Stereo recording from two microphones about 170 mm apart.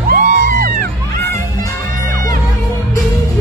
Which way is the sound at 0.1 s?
55° right (ahead or behind).